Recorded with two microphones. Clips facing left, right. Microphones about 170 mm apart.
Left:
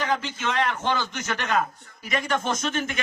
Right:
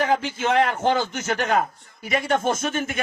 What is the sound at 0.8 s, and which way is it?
Speech, 30° right (ahead or behind).